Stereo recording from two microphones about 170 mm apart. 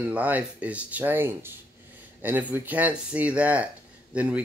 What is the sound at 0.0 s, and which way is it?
Speech, 10° right (ahead or behind).